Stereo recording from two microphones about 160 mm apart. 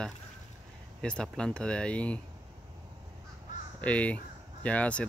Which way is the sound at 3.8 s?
10° left (ahead or behind).